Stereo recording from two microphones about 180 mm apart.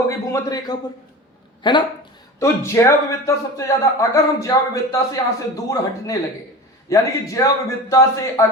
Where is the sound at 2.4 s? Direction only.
15° left (ahead or behind).